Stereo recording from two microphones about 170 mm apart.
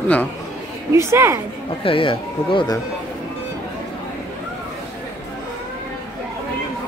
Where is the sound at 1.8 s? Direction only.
30° left (ahead or behind).